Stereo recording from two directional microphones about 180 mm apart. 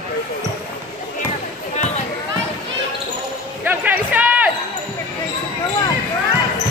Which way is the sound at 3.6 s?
10° right (ahead or behind).